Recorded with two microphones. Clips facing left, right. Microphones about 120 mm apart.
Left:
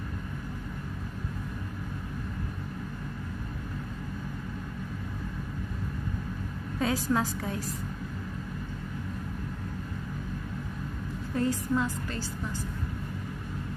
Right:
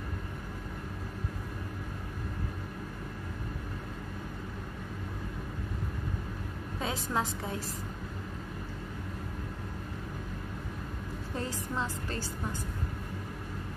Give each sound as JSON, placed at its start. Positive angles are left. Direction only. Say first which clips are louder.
{"t": 6.8, "sound": "a woman's voice", "louder": "left 5 dB", "side_deg": -25}
{"t": 11.3, "sound": "a woman's voice", "louder": "left 8 dB", "side_deg": -25}